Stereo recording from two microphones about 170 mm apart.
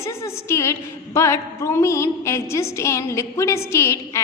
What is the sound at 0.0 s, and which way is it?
A woman's voice, 15° left (ahead or behind).